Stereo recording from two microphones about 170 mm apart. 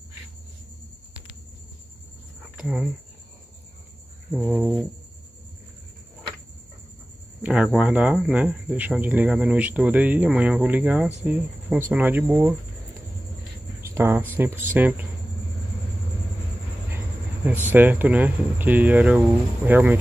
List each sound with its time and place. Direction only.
2.5 s speech: 5° right (ahead or behind)
4.3 s a sound: 5° right (ahead or behind)
7.4 s speech: 5° right (ahead or behind)
13.7 s a sound: 15° right (ahead or behind)
14.3 s speech: 10° right (ahead or behind)
17.6 s speech: 10° right (ahead or behind)